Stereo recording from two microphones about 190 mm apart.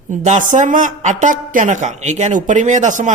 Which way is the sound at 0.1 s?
40° right (ahead or behind).